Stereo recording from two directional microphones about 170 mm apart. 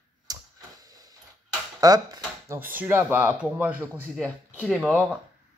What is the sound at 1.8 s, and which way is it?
Speech, 20° right (ahead or behind).